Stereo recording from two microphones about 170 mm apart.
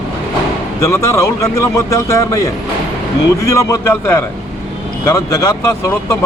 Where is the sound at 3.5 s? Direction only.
20° left (ahead or behind).